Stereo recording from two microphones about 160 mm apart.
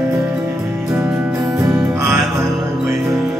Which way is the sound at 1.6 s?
15° right (ahead or behind).